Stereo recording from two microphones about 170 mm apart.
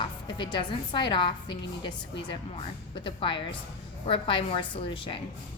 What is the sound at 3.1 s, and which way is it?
A woman's voice, 30° left (ahead or behind).